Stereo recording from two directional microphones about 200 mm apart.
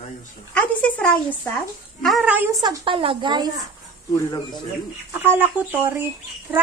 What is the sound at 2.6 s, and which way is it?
Speech, 25° right (ahead or behind).